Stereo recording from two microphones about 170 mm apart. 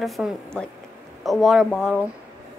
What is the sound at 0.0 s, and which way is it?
Speech, centre (ahead or behind).